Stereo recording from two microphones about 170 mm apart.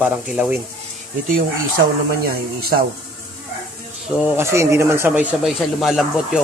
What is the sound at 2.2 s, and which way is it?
Speech, 60° right (ahead or behind).